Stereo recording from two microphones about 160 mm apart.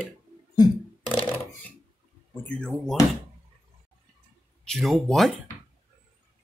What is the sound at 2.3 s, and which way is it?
Speech, 10° left (ahead or behind).